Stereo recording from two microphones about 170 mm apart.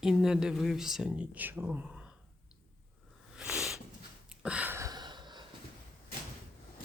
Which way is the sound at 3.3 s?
5° right (ahead or behind).